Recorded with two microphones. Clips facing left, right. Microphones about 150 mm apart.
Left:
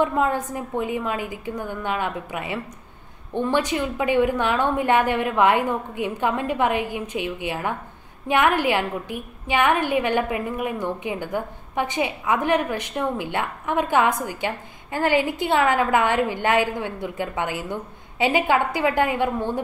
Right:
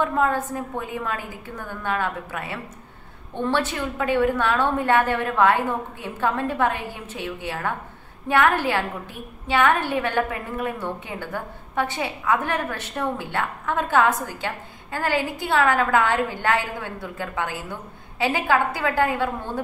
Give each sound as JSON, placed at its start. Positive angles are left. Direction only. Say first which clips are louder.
{"t": 0.0, "sound": "a woman's voice", "louder": "left 1 dB", "side_deg": 15}